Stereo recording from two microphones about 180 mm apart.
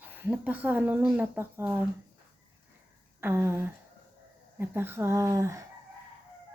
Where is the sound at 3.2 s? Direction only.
15° right (ahead or behind).